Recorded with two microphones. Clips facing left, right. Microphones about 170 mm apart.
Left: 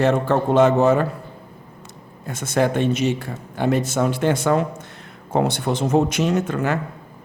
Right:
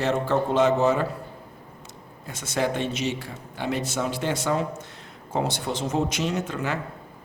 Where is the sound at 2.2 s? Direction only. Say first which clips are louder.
Left 6 dB; 50° left (ahead or behind).